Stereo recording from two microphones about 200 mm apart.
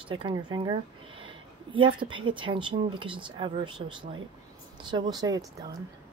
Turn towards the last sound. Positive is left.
turn(degrees=-20)  # may be behind; listen again after turning